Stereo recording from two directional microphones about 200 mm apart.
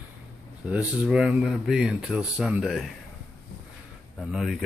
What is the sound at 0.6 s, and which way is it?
Speech, 5° right (ahead or behind).